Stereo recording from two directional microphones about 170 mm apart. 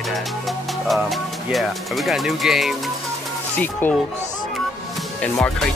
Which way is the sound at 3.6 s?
10° left (ahead or behind).